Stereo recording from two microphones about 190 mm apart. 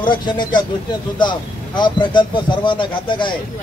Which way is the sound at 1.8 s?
25° left (ahead or behind).